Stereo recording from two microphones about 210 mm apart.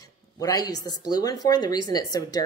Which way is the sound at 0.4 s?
15° left (ahead or behind).